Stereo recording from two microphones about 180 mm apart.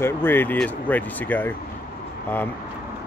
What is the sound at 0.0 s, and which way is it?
Speech, 10° left (ahead or behind).